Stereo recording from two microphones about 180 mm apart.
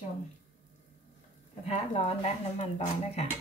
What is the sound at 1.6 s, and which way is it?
Speech, 35° left (ahead or behind).